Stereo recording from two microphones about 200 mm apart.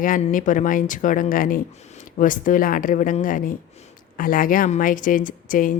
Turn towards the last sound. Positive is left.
turn(degrees=45)  # may be behind; listen again after turning